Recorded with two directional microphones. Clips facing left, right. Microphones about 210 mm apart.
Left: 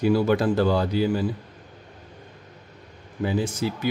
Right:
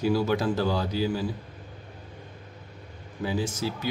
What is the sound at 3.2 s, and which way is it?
Speech, 55° left (ahead or behind).